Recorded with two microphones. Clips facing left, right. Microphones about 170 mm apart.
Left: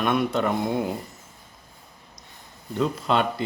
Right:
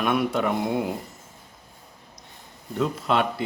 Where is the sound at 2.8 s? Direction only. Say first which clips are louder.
Even; centre (ahead or behind).